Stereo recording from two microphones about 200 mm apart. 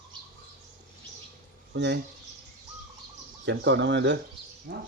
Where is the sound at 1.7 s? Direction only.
60° right (ahead or behind).